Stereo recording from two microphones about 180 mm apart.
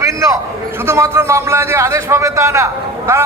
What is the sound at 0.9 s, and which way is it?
A man's voice, 15° right (ahead or behind).